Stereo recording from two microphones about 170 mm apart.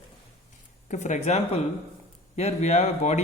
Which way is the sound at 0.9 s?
45° left (ahead or behind).